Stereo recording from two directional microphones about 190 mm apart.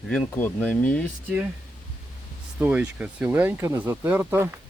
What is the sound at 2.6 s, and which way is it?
Speech, 10° right (ahead or behind).